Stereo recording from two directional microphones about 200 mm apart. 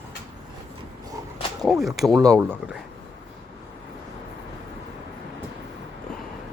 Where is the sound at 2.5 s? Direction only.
5° right (ahead or behind).